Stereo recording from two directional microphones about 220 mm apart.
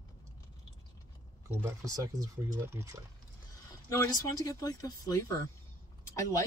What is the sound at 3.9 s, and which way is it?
Speech, 15° left (ahead or behind).